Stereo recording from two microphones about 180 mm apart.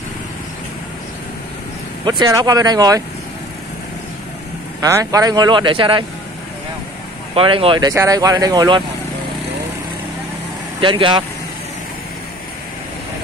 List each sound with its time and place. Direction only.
2.0 s speech: 20° right (ahead or behind)
4.8 s speech: 20° right (ahead or behind)
7.3 s speech: 30° right (ahead or behind)
10.8 s speech: 25° right (ahead or behind)